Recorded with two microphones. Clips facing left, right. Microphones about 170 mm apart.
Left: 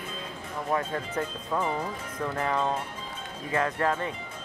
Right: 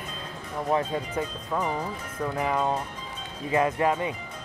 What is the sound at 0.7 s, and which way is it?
Speech, 10° right (ahead or behind).